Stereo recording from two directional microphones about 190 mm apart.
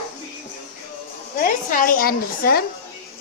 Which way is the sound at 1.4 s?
45° left (ahead or behind).